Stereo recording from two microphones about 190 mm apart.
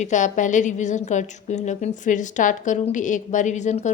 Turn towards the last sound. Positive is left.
turn(degrees=40)  # may be behind; listen again after turning